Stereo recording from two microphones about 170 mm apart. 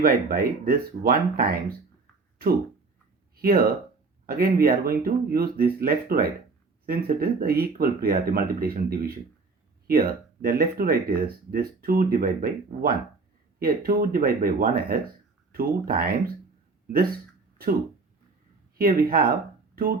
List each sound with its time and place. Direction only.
0.0 s speech: 60° right (ahead or behind)
3.3 s speech: 60° right (ahead or behind)
18.8 s speech: 60° right (ahead or behind)